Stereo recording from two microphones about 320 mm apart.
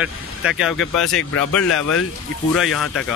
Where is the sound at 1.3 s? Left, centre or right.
Left.